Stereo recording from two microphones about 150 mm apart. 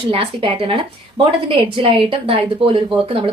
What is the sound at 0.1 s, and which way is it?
Speech, 35° right (ahead or behind).